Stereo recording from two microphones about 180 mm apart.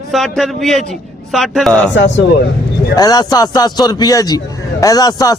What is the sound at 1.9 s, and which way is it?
Speech, 85° left.